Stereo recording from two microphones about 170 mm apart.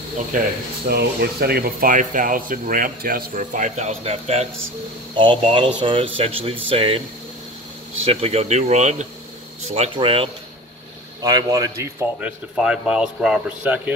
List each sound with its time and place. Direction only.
0.8 s speech: 65° right (ahead or behind); by 7.0 s 35° right (ahead or behind)
8.0 s speech: 35° right (ahead or behind)
9.8 s speech: 35° right (ahead or behind)
11.1 s speech: 20° right (ahead or behind)